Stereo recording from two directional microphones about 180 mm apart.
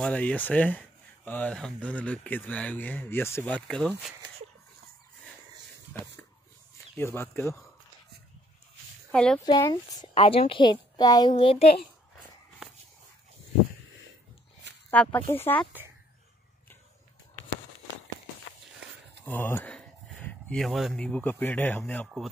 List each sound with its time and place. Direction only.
0.0 s speech: 5° left (ahead or behind)
7.0 s speech: 15° left (ahead or behind)
9.1 s speech: 5° left (ahead or behind)
9.4 s a woman's voice: 20° left (ahead or behind)
14.9 s speech: 10° left (ahead or behind)
19.2 s a sound: 10° left (ahead or behind)
20.2 s speech: 5° left (ahead or behind)